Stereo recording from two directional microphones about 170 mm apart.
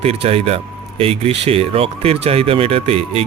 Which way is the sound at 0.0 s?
35° right (ahead or behind).